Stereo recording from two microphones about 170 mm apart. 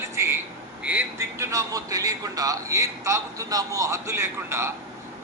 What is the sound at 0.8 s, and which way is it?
A man's voice, 10° right (ahead or behind).